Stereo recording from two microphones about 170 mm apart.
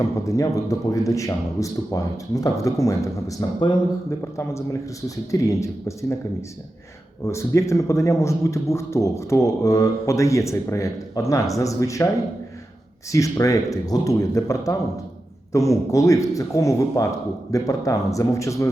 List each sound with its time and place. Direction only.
0.0 s a man's voice: 20° left (ahead or behind)
7.3 s a man's voice: 15° left (ahead or behind)
13.1 s speech: 20° left (ahead or behind)